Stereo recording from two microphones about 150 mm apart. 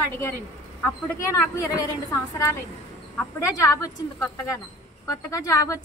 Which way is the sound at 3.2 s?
20° left (ahead or behind).